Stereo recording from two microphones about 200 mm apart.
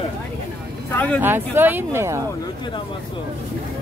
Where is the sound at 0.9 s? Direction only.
5° left (ahead or behind).